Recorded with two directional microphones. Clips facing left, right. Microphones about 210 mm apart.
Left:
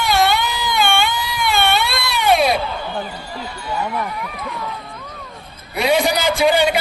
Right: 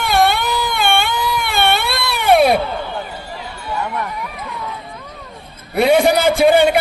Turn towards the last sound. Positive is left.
turn(degrees=-55)  # may be behind; listen again after turning